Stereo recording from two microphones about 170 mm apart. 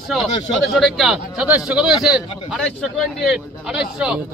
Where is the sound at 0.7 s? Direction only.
Centre (ahead or behind).